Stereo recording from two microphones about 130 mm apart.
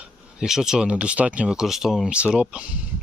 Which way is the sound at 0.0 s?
5° right (ahead or behind).